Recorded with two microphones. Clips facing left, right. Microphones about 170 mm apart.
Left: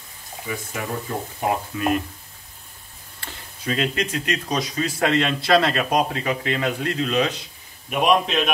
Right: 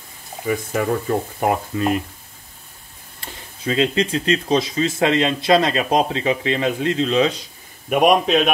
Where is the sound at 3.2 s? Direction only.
20° right (ahead or behind).